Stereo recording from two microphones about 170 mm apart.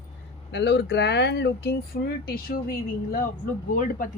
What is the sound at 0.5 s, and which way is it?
Speech, 90° left.